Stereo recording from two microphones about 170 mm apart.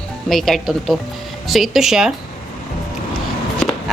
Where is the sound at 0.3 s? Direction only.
Centre (ahead or behind).